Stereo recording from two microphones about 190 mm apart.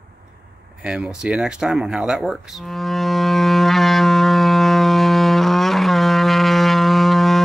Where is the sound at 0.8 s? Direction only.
5° right (ahead or behind).